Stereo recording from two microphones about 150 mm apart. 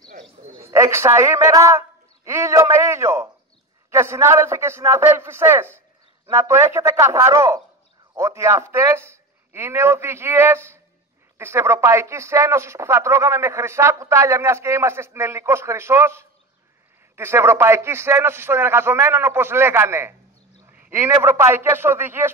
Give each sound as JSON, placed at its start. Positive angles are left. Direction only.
{"t": 0.6, "sound": "a woman's voice", "side_deg": -20}